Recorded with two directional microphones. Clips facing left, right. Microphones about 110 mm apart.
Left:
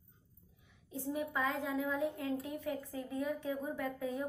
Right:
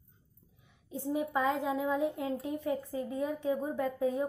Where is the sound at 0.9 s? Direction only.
20° right (ahead or behind).